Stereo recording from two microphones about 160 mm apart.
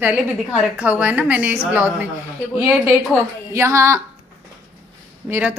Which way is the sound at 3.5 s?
20° right (ahead or behind).